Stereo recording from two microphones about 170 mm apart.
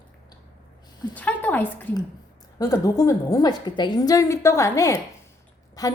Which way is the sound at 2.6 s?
20° left (ahead or behind).